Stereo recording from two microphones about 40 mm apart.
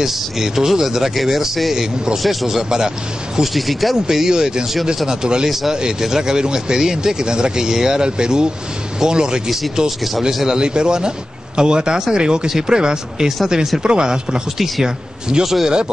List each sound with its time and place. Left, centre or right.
0.0 s speech: centre
3.5 s speech: centre
3.9 s speech: centre
9.8 s speech: centre
10.2 s a man's voice: centre